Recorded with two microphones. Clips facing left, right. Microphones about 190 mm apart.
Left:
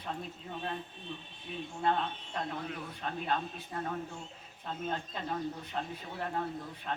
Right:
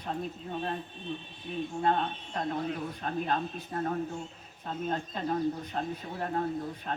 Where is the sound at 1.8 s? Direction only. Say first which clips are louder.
Right 1 dB; 40° right (ahead or behind).